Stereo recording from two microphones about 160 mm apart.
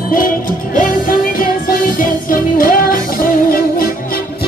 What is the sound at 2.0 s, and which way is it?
Music, 60° left (ahead or behind).